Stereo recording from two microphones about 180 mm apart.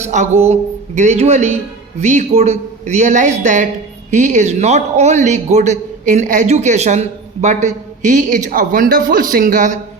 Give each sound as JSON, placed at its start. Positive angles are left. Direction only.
{"t": 0.0, "sound": "a man's voice", "side_deg": -40}